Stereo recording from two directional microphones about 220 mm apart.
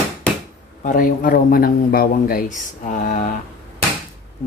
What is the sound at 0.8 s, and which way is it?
A man's voice, 40° left (ahead or behind).